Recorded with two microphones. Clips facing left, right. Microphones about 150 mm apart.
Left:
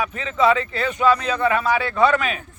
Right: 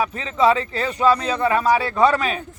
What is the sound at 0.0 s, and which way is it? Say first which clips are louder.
Speech: right 1 dB; 35° right (ahead or behind).